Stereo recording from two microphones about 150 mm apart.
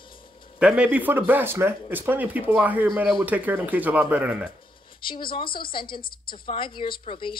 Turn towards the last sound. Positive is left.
turn(degrees=35)  # may be behind; listen again after turning